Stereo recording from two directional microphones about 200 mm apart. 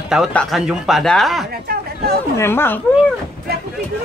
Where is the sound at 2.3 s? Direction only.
10° left (ahead or behind).